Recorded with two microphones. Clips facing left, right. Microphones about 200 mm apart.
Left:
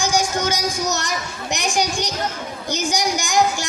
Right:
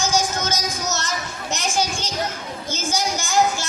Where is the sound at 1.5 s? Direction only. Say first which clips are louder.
Left 2 dB; 15° left (ahead or behind).